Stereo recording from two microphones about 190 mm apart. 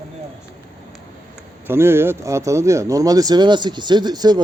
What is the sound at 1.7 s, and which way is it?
Speech, 10° right (ahead or behind).